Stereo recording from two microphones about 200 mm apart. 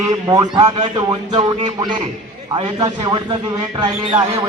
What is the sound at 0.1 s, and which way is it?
A man's voice, 20° right (ahead or behind).